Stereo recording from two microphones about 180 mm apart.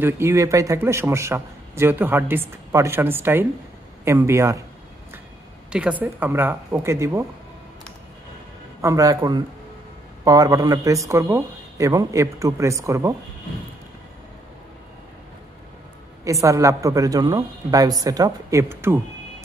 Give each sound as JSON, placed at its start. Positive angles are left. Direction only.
{"t": 0.0, "sound": "a man's voice", "side_deg": -15}
{"t": 5.7, "sound": "a man's voice", "side_deg": -5}
{"t": 8.8, "sound": "a man's voice", "side_deg": -20}
{"t": 16.3, "sound": "speech", "side_deg": -15}